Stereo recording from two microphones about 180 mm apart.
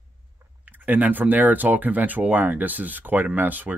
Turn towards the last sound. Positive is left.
turn(degrees=-10)  # may be behind; listen again after turning